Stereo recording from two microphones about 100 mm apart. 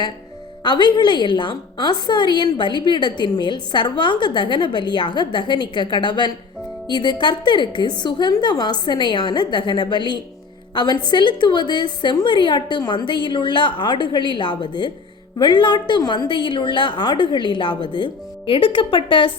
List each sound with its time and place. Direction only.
0.6 s a woman's voice: 50° left (ahead or behind)